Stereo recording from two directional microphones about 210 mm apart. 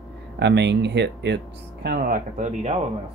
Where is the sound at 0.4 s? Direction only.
55° right (ahead or behind); by 2.8 s 35° right (ahead or behind).